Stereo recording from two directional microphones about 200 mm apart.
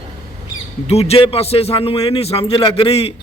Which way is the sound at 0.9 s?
30° left (ahead or behind).